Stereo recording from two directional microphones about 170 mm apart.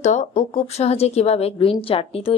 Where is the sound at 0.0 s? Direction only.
45° left (ahead or behind).